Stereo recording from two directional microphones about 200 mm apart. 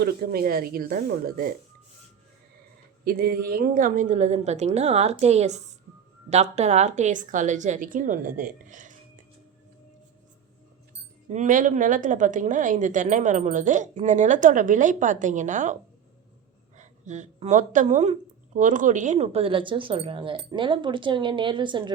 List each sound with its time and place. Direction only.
0.0 s speech: 50° right (ahead or behind)
3.0 s a woman's voice: 50° right (ahead or behind)
8.7 s music: 40° right (ahead or behind)
11.3 s a woman's voice: 40° right (ahead or behind); by 21.9 s 25° right (ahead or behind)